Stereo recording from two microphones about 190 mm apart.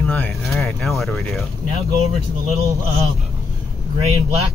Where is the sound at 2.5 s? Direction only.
15° right (ahead or behind).